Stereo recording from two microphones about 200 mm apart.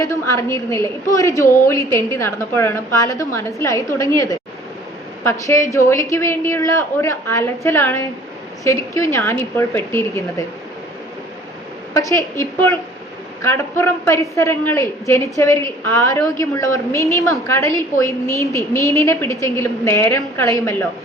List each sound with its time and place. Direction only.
0.0 s a woman's voice: 15° left (ahead or behind)
11.9 s a woman's voice: 15° left (ahead or behind)